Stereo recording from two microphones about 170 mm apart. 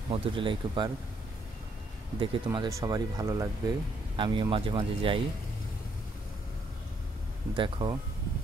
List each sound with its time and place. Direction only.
0.1 s speech: 30° right (ahead or behind)
2.1 s speech: 25° right (ahead or behind)
7.5 s speech: 25° right (ahead or behind)